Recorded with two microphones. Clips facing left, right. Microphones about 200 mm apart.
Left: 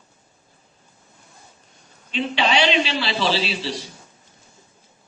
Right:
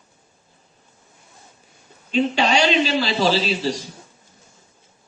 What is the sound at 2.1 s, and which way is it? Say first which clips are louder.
A man's voice: right 3 dB; 45° right (ahead or behind).